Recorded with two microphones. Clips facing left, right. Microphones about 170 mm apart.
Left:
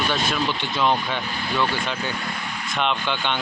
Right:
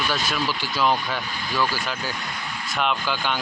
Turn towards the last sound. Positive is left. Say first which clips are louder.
# left 1 dB
turn(degrees=-5)  # may be behind; listen again after turning